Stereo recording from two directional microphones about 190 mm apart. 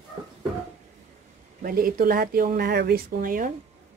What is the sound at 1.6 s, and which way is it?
Speech, 50° right (ahead or behind).